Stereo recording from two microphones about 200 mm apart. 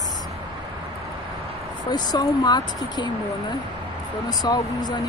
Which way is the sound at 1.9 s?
20° left (ahead or behind).